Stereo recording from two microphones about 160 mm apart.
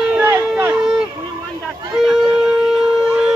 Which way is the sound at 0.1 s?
10° right (ahead or behind).